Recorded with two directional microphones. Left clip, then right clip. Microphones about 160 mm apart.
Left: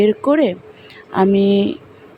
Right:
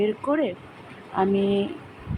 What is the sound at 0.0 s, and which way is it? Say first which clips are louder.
Speech: left 9 dB; 45° left (ahead or behind).